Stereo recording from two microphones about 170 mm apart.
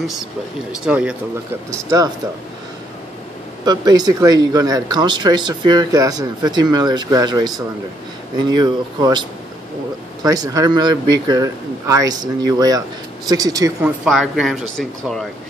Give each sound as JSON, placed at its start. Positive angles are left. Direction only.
{"t": 0.8, "sound": "speech", "side_deg": -5}
{"t": 1.7, "sound": "speech", "side_deg": -20}
{"t": 3.6, "sound": "speech", "side_deg": -25}
{"t": 10.2, "sound": "speech", "side_deg": -20}
{"t": 13.8, "sound": "speech", "side_deg": 0}